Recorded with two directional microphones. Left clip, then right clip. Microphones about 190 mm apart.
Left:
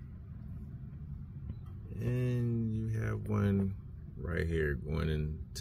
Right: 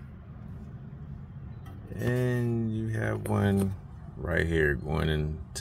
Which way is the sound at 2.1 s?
25° right (ahead or behind).